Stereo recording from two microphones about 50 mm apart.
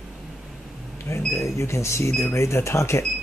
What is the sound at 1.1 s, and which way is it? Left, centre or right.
Speech, left.